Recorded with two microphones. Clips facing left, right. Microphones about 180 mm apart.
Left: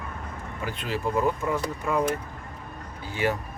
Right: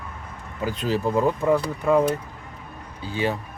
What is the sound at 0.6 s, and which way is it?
Speech, 40° right (ahead or behind).